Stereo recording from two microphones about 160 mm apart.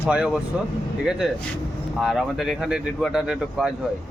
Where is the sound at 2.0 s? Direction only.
Centre (ahead or behind).